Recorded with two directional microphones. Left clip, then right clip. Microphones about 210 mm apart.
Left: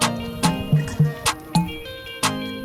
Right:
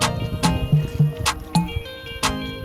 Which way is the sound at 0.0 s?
Centre (ahead or behind).